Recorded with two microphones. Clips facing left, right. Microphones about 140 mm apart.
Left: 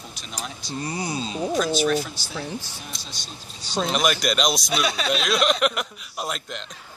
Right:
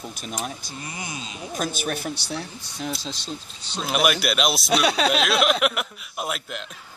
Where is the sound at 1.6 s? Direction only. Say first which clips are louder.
Left 4 dB; 50° right (ahead or behind).